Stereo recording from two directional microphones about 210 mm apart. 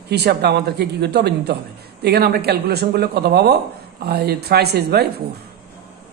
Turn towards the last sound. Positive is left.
turn(degrees=-50)  # may be behind; listen again after turning